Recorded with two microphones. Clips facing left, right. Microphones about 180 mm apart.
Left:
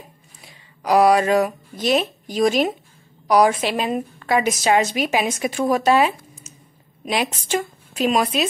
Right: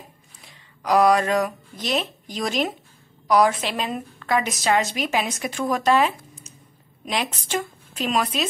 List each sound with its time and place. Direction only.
0.5 s a woman's voice: 10° left (ahead or behind)